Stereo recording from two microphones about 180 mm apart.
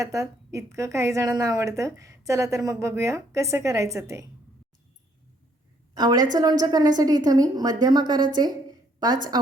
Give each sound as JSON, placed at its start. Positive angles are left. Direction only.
{"t": 0.0, "sound": "a woman's voice", "side_deg": -15}
{"t": 5.9, "sound": "a woman's voice", "side_deg": -20}
{"t": 9.3, "sound": "a woman's voice", "side_deg": -20}